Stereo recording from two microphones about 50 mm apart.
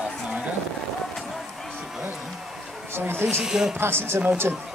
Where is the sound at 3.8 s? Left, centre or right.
Right.